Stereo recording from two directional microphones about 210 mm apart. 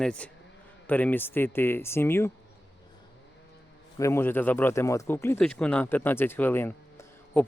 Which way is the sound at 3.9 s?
15° left (ahead or behind).